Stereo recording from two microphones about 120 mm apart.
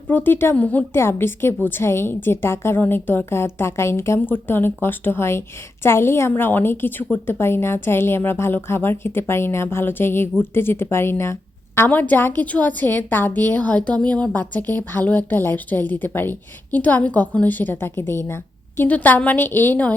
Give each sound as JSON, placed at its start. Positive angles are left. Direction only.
{"t": 0.1, "sound": "a woman's voice", "side_deg": 15}